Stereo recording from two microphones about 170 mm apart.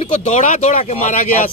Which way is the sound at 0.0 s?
45° left (ahead or behind).